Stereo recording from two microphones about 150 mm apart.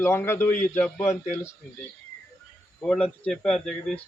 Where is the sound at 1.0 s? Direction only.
55° left (ahead or behind).